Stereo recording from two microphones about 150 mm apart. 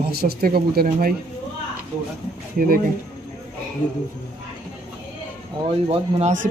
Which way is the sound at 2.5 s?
70° right (ahead or behind).